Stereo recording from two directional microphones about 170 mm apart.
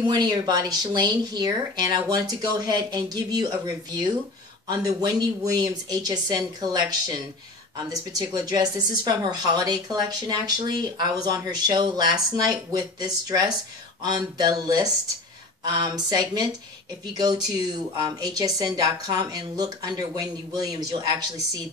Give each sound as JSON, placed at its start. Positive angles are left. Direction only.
{"t": 0.0, "sound": "speech", "side_deg": -25}